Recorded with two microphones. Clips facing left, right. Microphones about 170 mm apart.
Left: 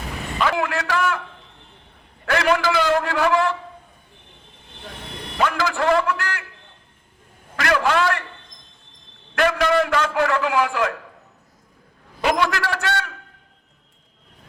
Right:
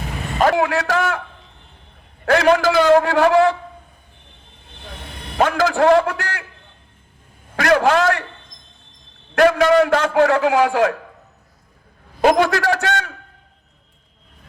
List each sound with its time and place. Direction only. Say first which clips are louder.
0.3 s a man's voice: right 6 dB; 45° right (ahead or behind)
2.2 s a man's voice: right 5 dB; 40° right (ahead or behind)
5.4 s a man's voice: right 6 dB; 45° right (ahead or behind)
7.5 s a man's voice: right 5 dB; 40° right (ahead or behind)
9.3 s a man's voice: right 6 dB; 45° right (ahead or behind)
12.2 s a man's voice: right 6 dB; 45° right (ahead or behind)